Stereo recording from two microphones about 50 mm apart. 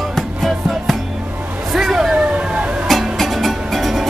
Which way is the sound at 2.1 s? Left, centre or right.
Right.